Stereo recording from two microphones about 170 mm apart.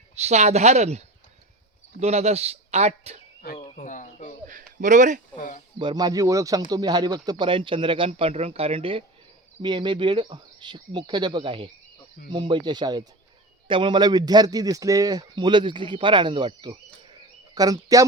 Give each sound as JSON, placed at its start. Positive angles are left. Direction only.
{"t": 0.2, "sound": "speech", "side_deg": -40}
{"t": 3.4, "sound": "cricket", "side_deg": 65}
{"t": 3.8, "sound": "cricket", "side_deg": 50}
{"t": 4.4, "sound": "a sound", "side_deg": -50}
{"t": 5.4, "sound": "a sound", "side_deg": 50}
{"t": 5.8, "sound": "a man's voice", "side_deg": -25}